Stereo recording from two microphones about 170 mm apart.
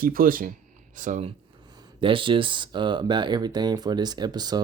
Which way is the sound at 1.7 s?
30° right (ahead or behind).